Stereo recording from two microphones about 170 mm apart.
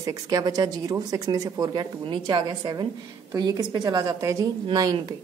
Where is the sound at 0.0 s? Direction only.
20° right (ahead or behind).